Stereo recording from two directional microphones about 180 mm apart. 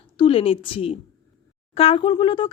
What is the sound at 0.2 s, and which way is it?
Speech, 30° left (ahead or behind).